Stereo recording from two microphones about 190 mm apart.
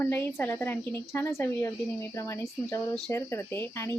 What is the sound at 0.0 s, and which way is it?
A woman's voice, 10° left (ahead or behind).